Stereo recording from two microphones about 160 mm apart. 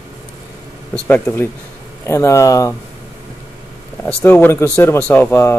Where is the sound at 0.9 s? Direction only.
10° left (ahead or behind).